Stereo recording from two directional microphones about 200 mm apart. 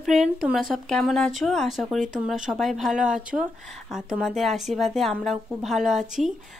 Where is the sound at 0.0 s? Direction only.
Centre (ahead or behind).